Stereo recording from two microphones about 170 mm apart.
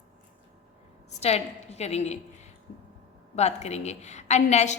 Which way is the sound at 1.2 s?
40° left (ahead or behind).